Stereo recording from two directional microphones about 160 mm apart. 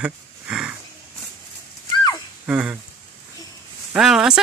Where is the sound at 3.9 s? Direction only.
5° right (ahead or behind).